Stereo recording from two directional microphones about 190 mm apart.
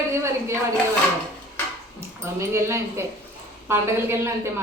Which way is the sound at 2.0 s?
15° right (ahead or behind).